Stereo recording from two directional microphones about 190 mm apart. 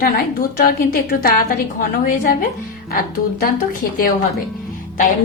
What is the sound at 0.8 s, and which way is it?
A woman's voice, 50° left (ahead or behind).